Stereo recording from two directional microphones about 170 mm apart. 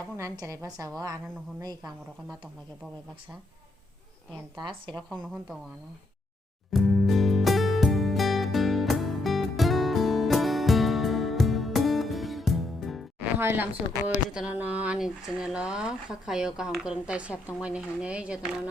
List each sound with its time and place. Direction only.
0.2 s a woman's voice: 20° right (ahead or behind)
4.5 s a woman's voice: 30° right (ahead or behind)
5.0 s speech: 5° right (ahead or behind)
6.7 s music: centre (ahead or behind)
13.4 s a woman's voice: 15° right (ahead or behind)